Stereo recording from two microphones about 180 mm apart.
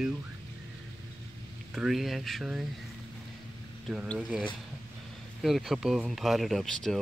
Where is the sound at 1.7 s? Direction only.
Centre (ahead or behind).